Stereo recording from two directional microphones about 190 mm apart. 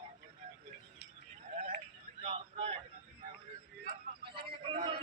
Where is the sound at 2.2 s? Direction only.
35° right (ahead or behind).